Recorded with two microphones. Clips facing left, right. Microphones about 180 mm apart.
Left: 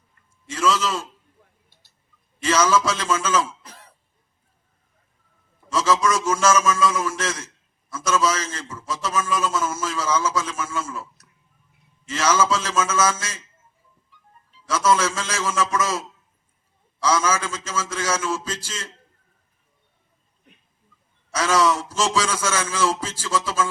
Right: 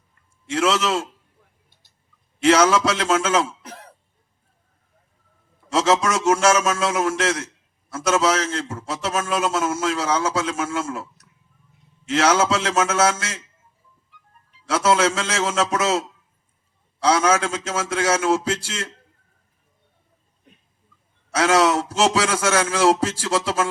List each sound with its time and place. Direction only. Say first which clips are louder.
0.4 s a man's voice: right 2 dB; 70° right (ahead or behind)
2.4 s a man's voice: right 4 dB; 70° right (ahead or behind)
5.7 s a man's voice: right 2 dB; 70° right (ahead or behind)
12.0 s a man's voice: right 3 dB; 70° right (ahead or behind)
21.3 s a man's voice: right 3 dB; 70° right (ahead or behind)